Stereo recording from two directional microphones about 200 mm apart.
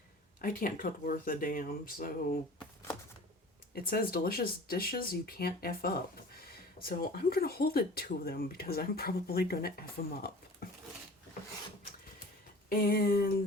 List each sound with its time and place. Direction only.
0.4 s speech: 45° left (ahead or behind)
3.8 s speech: 50° left (ahead or behind)
12.6 s speech: 50° left (ahead or behind)